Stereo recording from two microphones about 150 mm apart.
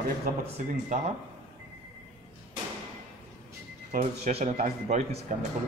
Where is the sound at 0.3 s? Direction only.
70° right (ahead or behind).